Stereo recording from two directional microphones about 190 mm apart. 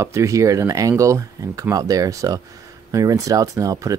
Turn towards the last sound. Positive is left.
turn(degrees=-15)  # may be behind; listen again after turning